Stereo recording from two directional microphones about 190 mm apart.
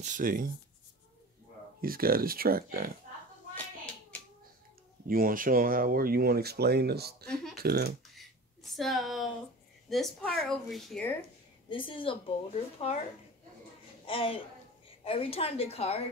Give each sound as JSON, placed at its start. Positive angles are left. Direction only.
{"t": 0.0, "sound": "speech", "side_deg": -45}
{"t": 1.8, "sound": "speech", "side_deg": -50}
{"t": 5.0, "sound": "speech", "side_deg": -50}
{"t": 8.7, "sound": "a woman's voice", "side_deg": 0}
{"t": 11.7, "sound": "a woman's voice", "side_deg": 25}
{"t": 14.0, "sound": "a woman's voice", "side_deg": 30}